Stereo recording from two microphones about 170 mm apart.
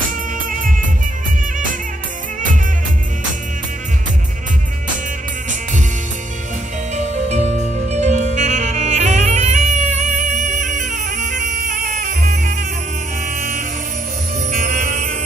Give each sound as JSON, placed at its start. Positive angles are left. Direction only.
{"t": 7.2, "sound": "saxophone", "side_deg": -40}
{"t": 11.8, "sound": "music", "side_deg": -50}
{"t": 13.4, "sound": "a sound", "side_deg": -45}
{"t": 14.5, "sound": "music", "side_deg": -50}